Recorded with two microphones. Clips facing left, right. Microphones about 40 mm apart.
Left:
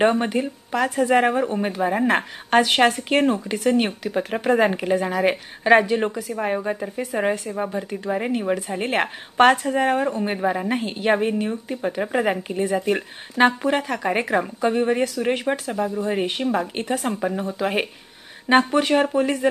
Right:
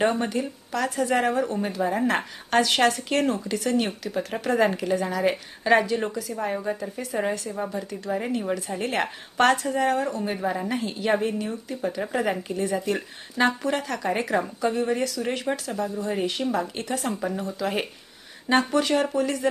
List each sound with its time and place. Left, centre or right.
0.0 s speech: left
10.8 s speech: left